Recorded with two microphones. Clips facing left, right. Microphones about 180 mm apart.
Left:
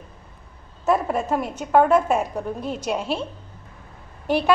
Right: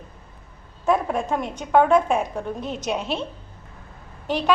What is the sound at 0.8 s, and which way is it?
A woman's voice, 5° left (ahead or behind).